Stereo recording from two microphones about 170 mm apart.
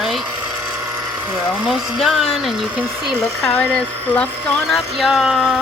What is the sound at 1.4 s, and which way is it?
Speech, centre (ahead or behind).